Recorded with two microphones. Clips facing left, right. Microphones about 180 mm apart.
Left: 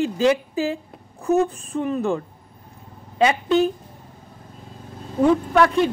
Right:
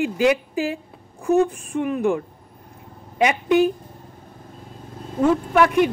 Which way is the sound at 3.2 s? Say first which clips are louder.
Right 1 dB; 15° right (ahead or behind).